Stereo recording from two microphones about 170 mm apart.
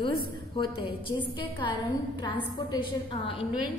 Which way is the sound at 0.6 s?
30° left (ahead or behind).